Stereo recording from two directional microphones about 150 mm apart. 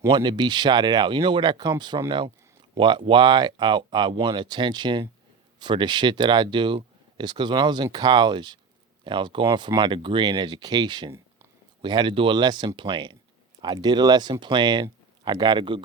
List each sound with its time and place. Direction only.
0.1 s speech: 30° right (ahead or behind)